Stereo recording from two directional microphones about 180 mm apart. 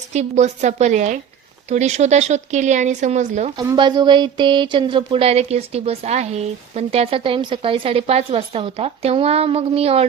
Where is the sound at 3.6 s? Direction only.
25° right (ahead or behind).